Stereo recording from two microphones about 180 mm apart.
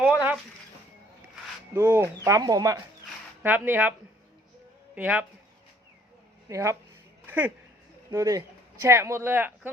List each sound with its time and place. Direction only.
0.0 s a sound: 10° right (ahead or behind)
1.7 s speech: 10° right (ahead or behind)
3.4 s speech: 10° right (ahead or behind)
4.9 s speech: 5° right (ahead or behind)
6.5 s speech: 15° right (ahead or behind)
7.3 s a sound: 10° right (ahead or behind)
8.1 s speech: 20° right (ahead or behind)